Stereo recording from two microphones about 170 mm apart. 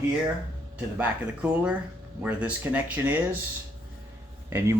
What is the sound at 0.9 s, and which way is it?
Speech, 5° right (ahead or behind).